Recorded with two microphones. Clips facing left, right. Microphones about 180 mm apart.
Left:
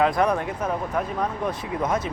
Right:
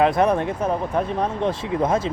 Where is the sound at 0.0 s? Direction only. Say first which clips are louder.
Right 3 dB; 25° right (ahead or behind).